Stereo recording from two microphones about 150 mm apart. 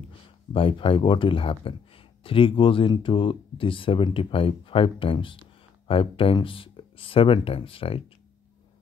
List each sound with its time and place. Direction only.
0.5 s speech: 35° left (ahead or behind)